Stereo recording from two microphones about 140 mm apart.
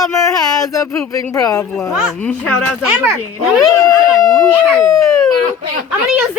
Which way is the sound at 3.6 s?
25° left (ahead or behind).